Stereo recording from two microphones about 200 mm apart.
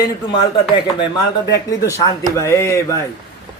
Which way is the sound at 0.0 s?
25° left (ahead or behind).